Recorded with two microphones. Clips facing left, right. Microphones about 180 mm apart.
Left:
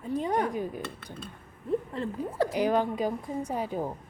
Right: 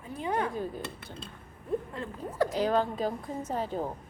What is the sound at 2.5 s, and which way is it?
A woman's voice, 15° left (ahead or behind).